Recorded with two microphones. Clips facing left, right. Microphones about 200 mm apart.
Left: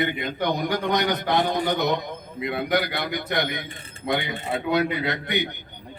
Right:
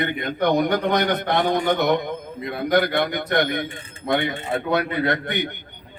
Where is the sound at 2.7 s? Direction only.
55° right (ahead or behind).